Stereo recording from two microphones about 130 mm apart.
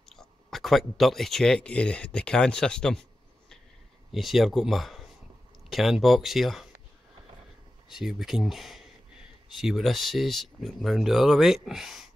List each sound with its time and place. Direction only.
0.0 s speech: centre (ahead or behind)
7.9 s speech: 5° right (ahead or behind)